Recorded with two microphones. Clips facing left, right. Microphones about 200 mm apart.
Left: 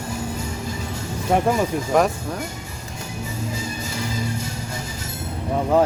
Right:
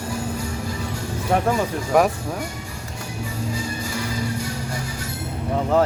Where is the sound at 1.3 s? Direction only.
25° left (ahead or behind).